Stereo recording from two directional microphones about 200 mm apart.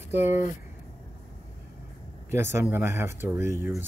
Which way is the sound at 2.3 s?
15° right (ahead or behind).